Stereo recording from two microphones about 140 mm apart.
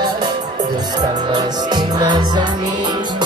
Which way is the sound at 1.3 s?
30° right (ahead or behind).